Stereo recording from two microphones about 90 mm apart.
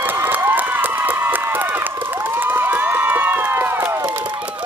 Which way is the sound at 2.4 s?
20° right (ahead or behind).